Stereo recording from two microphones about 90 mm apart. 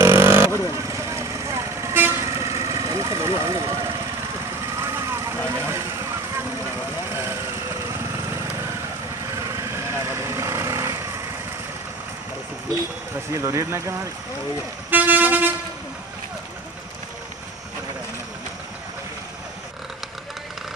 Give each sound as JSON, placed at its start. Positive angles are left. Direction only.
{"t": 0.0, "sound": "vehicle", "side_deg": -25}
{"t": 9.3, "sound": "vehicle", "side_deg": -35}
{"t": 13.3, "sound": "speech", "side_deg": -35}
{"t": 14.9, "sound": "vehicle", "side_deg": -20}